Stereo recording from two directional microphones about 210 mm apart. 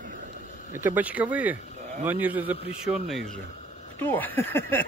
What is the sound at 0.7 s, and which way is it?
A man's voice, 10° right (ahead or behind).